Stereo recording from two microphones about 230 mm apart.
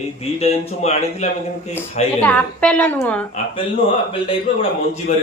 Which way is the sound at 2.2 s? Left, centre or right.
Centre.